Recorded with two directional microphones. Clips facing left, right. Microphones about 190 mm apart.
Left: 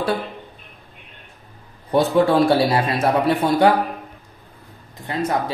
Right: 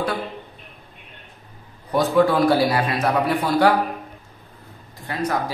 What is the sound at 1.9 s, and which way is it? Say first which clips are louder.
A man's voice: left 1 dB; 30° left (ahead or behind).